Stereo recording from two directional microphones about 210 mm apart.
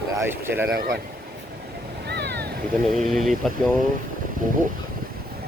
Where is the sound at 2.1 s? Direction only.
55° right (ahead or behind).